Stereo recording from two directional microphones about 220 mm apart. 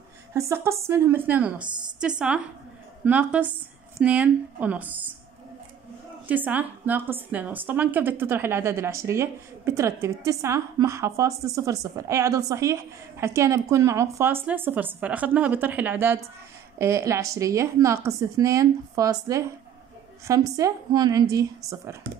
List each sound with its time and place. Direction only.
0.3 s a woman's voice: 10° right (ahead or behind)
6.2 s a woman's voice: 5° right (ahead or behind)